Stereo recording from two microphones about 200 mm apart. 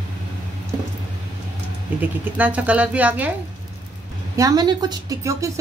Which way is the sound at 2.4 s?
5° right (ahead or behind).